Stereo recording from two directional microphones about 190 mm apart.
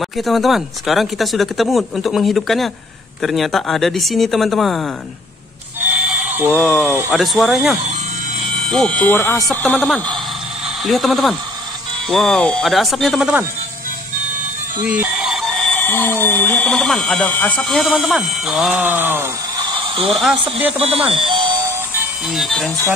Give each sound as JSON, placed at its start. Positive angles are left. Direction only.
{"t": 0.0, "sound": "chicken", "side_deg": 0}
{"t": 5.8, "sound": "sheep", "side_deg": -10}
{"t": 6.5, "sound": "speech", "side_deg": 10}
{"t": 7.0, "sound": "chicken", "side_deg": 0}
{"t": 8.6, "sound": "speech", "side_deg": 5}
{"t": 10.8, "sound": "chicken", "side_deg": 0}
{"t": 14.9, "sound": "chicken", "side_deg": -5}
{"t": 19.7, "sound": "a sound", "side_deg": -25}
{"t": 20.1, "sound": "chicken", "side_deg": 0}
{"t": 20.7, "sound": "speech", "side_deg": -30}
{"t": 21.9, "sound": "speech", "side_deg": 0}